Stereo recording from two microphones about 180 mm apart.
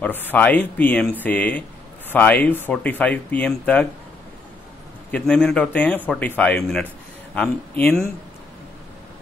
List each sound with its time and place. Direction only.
0.0 s speech: 10° left (ahead or behind)
5.1 s speech: 5° left (ahead or behind)